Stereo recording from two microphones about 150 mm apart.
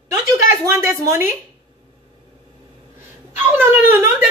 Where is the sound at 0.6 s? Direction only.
20° right (ahead or behind).